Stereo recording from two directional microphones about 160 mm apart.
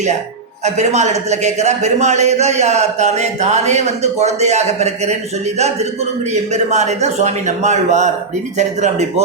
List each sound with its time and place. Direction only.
0.6 s a man's voice: 45° right (ahead or behind)
6.5 s a man's voice: 45° right (ahead or behind)